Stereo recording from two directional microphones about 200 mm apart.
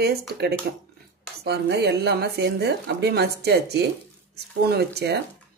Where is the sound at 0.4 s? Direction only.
55° right (ahead or behind).